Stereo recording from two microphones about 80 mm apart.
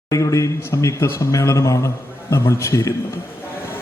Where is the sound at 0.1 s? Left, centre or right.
Left.